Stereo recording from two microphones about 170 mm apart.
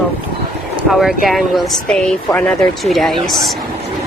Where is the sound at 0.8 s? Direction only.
Centre (ahead or behind).